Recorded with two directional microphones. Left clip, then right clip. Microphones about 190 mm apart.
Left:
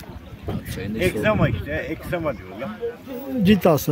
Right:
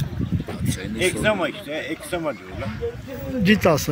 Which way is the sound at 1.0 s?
Centre (ahead or behind).